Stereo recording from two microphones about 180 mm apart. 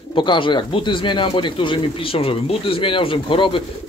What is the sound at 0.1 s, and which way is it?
Speech, 25° left (ahead or behind).